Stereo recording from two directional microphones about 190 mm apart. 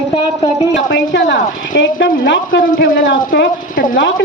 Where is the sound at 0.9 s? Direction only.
65° left (ahead or behind).